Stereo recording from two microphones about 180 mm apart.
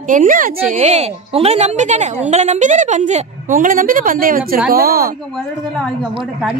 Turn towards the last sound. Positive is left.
turn(degrees=-5)  # may be behind; listen again after turning